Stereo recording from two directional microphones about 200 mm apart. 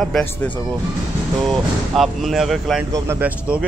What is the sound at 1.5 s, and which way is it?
Speech, centre (ahead or behind).